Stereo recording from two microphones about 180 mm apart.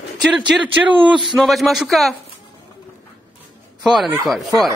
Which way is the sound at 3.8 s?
Centre (ahead or behind).